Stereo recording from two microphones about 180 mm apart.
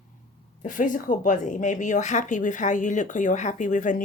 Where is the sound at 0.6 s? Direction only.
45° left (ahead or behind).